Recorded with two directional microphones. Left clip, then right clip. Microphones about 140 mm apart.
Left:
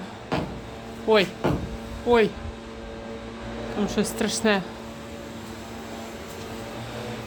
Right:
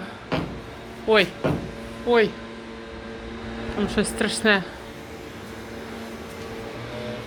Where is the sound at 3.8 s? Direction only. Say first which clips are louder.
Right 2 dB; 20° left (ahead or behind).